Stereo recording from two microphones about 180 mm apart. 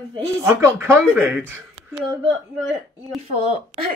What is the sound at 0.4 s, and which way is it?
Speech, 15° right (ahead or behind).